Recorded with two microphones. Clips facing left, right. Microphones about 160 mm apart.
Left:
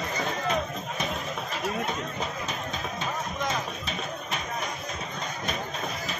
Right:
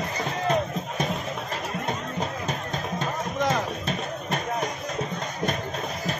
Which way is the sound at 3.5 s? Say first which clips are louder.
Right 5 dB; 50° right (ahead or behind).